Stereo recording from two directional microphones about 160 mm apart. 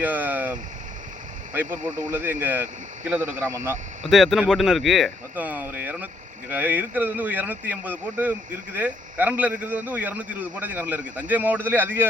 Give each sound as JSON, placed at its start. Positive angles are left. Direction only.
{"t": 0.0, "sound": "vehicle", "side_deg": -10}
{"t": 1.5, "sound": "speech", "side_deg": -10}
{"t": 4.1, "sound": "speech", "side_deg": 0}
{"t": 5.3, "sound": "speech", "side_deg": -10}